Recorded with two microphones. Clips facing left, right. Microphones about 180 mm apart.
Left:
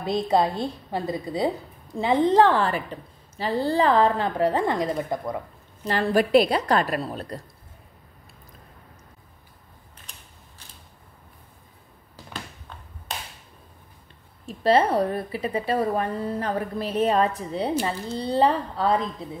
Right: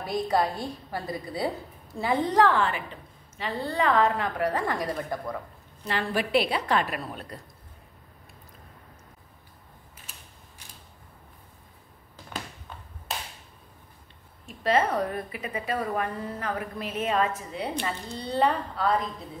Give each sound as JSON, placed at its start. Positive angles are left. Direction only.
{"t": 0.0, "sound": "a woman's voice", "side_deg": 25}
{"t": 5.9, "sound": "a woman's voice", "side_deg": 40}
{"t": 10.1, "sound": "creak", "side_deg": -5}
{"t": 13.1, "sound": "a sound", "side_deg": 0}
{"t": 14.4, "sound": "a woman's voice", "side_deg": 30}